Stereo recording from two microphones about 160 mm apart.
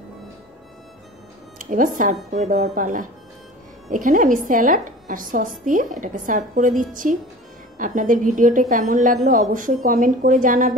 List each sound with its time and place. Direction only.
1.6 s a woman's voice: 55° right (ahead or behind)